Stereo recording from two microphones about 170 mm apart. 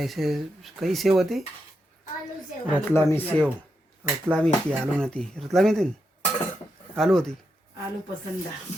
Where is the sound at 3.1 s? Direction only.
10° left (ahead or behind).